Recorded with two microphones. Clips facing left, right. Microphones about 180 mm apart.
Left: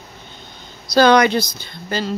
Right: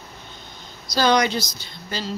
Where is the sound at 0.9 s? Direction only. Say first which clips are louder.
Left 6 dB; 60° left (ahead or behind).